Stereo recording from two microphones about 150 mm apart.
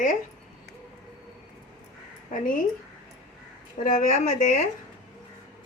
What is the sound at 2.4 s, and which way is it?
Speech, 65° left (ahead or behind).